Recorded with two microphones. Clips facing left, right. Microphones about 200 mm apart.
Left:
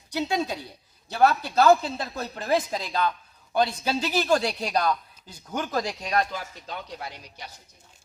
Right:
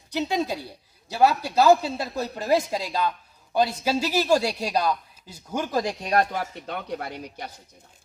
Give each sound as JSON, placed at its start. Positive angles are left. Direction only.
{"t": 0.2, "sound": "a man's voice", "side_deg": -10}
{"t": 6.1, "sound": "speech", "side_deg": -60}